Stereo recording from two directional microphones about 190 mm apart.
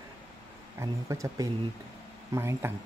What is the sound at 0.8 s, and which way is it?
Speech, 15° right (ahead or behind).